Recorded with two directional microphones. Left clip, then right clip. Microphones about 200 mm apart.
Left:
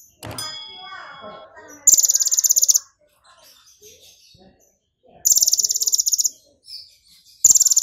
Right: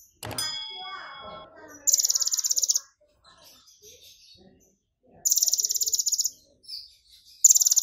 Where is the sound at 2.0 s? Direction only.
20° left (ahead or behind).